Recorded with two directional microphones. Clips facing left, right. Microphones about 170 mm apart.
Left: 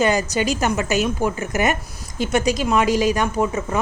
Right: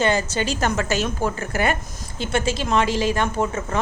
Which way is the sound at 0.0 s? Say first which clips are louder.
Left 2 dB; 15° left (ahead or behind).